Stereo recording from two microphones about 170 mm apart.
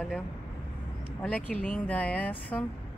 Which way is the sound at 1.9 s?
10° left (ahead or behind).